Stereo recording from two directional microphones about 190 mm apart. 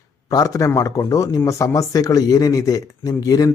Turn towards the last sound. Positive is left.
turn(degrees=20)  # may be behind; listen again after turning